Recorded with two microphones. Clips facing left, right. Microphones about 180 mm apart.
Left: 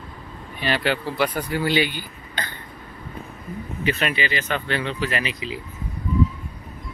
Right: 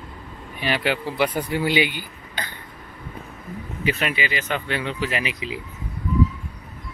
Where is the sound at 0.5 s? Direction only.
10° right (ahead or behind).